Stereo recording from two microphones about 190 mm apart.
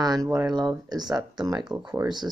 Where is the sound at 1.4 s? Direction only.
20° right (ahead or behind).